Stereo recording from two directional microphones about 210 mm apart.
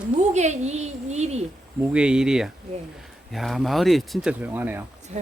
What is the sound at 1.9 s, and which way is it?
Speech, 5° right (ahead or behind).